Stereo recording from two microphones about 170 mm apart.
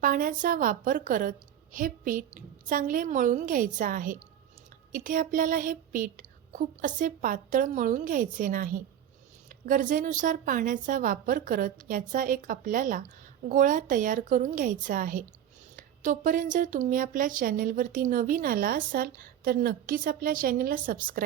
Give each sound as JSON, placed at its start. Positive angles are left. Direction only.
{"t": 0.0, "sound": "speech", "side_deg": -55}